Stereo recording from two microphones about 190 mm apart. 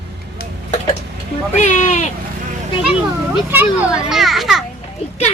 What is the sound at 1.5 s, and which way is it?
Speech, 40° left (ahead or behind).